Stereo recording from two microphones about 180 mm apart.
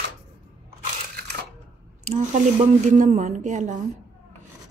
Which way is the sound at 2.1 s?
40° right (ahead or behind).